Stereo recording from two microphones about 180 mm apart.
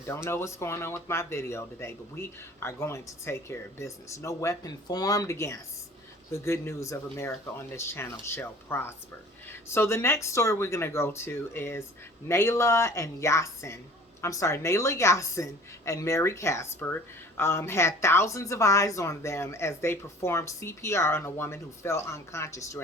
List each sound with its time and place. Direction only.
0.1 s a woman's voice: 15° left (ahead or behind)